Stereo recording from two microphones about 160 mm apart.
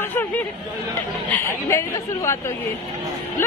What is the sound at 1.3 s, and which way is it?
Speech, 15° left (ahead or behind).